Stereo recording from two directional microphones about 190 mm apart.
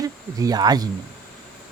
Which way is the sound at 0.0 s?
20° right (ahead or behind).